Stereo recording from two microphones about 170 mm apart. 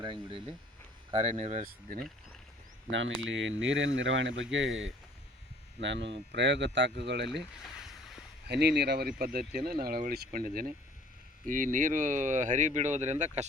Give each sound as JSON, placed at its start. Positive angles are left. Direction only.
{"t": 0.0, "sound": "speech", "side_deg": -30}
{"t": 1.1, "sound": "speech", "side_deg": -40}
{"t": 2.9, "sound": "speech", "side_deg": -90}
{"t": 8.4, "sound": "speech", "side_deg": -75}